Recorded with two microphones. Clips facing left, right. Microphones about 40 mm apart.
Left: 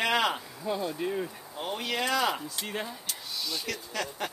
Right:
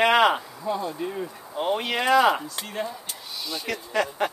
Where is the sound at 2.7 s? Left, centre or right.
Centre.